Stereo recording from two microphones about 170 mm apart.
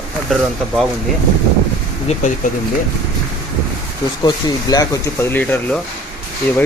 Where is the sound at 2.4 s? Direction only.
50° left (ahead or behind).